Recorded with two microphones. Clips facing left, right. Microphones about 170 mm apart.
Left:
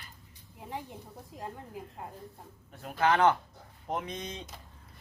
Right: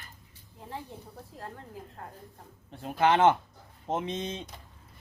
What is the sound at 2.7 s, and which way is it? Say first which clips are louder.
Speech: right 3 dB; 25° right (ahead or behind).